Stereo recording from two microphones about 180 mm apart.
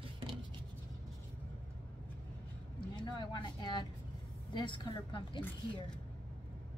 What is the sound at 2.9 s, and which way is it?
Speech, 25° left (ahead or behind).